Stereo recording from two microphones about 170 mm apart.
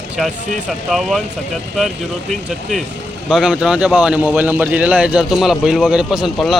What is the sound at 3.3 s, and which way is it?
A man's voice, 5° right (ahead or behind).